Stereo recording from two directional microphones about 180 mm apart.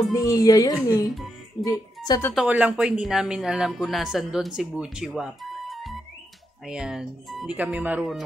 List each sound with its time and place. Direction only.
0.1 s a woman's voice: 20° left (ahead or behind)
2.3 s speech: 5° right (ahead or behind)